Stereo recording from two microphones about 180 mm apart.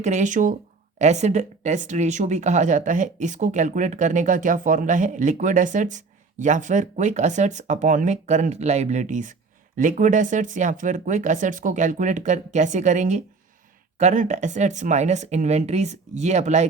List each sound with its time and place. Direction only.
0.0 s speech: 40° right (ahead or behind)